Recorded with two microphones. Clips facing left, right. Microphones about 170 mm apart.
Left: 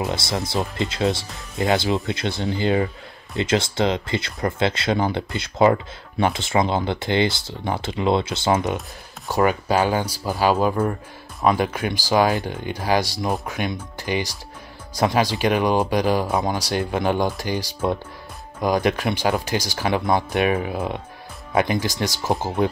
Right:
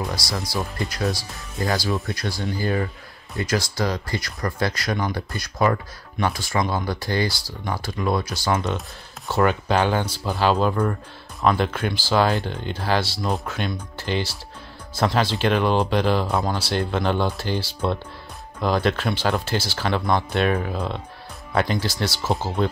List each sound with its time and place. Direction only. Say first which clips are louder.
0.0 s speech: left 3 dB; 25° left (ahead or behind)
9.3 s speech: left 1 dB; 10° left (ahead or behind)